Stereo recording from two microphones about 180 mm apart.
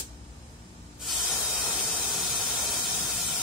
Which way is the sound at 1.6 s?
Centre (ahead or behind).